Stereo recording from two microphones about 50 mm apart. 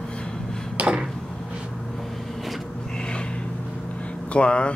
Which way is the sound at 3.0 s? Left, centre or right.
Centre.